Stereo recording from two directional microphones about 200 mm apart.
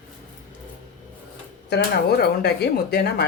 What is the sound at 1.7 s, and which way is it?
Speech, 55° left (ahead or behind).